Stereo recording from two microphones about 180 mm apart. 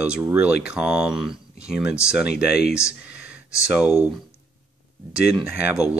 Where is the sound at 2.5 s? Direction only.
60° left (ahead or behind).